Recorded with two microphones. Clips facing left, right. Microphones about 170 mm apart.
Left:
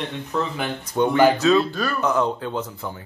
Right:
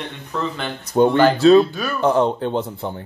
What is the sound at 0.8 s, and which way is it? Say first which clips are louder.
Speech: right 6 dB; 35° right (ahead or behind).